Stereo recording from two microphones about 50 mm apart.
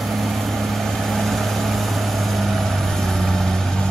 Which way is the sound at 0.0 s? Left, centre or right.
Centre.